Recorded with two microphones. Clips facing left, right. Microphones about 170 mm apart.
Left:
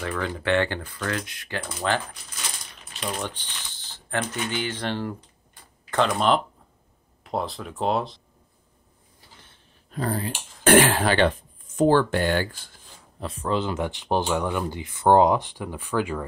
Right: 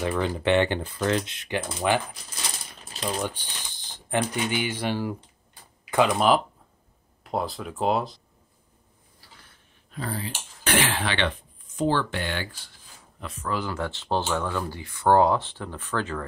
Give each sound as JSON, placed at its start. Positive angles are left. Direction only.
{"t": 0.0, "sound": "speech", "side_deg": -15}
{"t": 3.0, "sound": "speech", "side_deg": -10}
{"t": 9.2, "sound": "a sound", "side_deg": 25}
{"t": 9.8, "sound": "speech", "side_deg": 45}
{"t": 13.2, "sound": "speech", "side_deg": 30}